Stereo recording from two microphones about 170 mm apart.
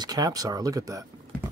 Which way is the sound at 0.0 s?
20° right (ahead or behind).